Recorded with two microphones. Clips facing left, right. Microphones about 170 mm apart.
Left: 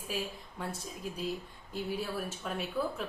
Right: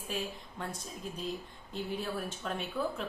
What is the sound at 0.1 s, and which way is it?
A woman's voice, 5° left (ahead or behind).